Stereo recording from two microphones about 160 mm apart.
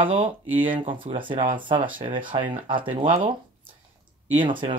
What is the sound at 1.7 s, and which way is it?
Speech, 60° right (ahead or behind).